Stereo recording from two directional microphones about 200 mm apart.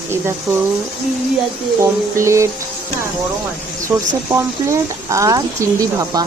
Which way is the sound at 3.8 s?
15° right (ahead or behind).